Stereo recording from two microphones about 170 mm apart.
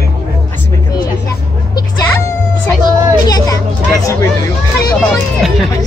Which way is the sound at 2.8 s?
25° left (ahead or behind).